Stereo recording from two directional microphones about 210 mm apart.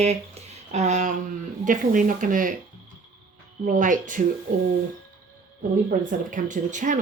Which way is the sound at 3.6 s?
40° right (ahead or behind).